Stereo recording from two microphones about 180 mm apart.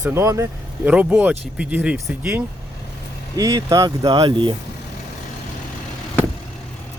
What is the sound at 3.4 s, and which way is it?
Speech, 20° right (ahead or behind).